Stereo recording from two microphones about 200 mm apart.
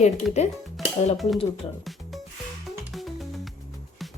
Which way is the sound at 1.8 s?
Centre (ahead or behind).